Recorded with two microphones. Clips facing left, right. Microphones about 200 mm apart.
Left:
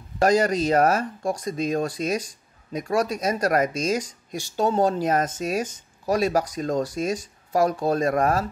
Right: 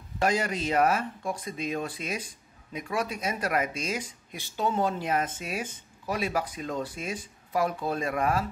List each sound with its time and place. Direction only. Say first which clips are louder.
0.2 s speech: left 8 dB; 40° left (ahead or behind)